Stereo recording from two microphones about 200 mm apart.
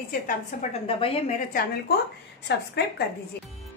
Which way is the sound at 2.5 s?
55° left (ahead or behind).